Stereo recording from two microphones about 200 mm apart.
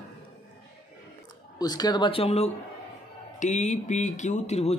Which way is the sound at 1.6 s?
20° left (ahead or behind).